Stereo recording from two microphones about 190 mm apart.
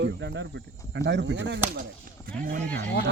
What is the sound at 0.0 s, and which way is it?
Speech, 70° right (ahead or behind).